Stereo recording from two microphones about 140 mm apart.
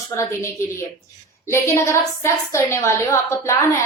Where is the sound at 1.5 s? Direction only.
20° left (ahead or behind).